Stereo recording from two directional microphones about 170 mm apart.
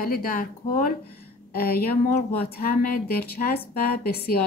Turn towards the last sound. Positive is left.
turn(degrees=65)  # may be behind; listen again after turning